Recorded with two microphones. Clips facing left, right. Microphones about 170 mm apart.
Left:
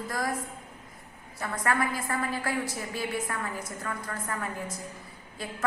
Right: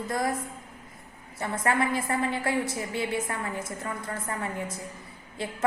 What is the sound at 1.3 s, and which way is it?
A woman's voice, 25° right (ahead or behind).